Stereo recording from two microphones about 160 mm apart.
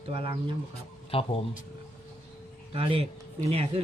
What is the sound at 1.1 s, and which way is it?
Speech, 35° left (ahead or behind).